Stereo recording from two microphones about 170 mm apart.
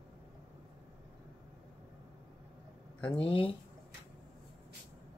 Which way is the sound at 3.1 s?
30° left (ahead or behind).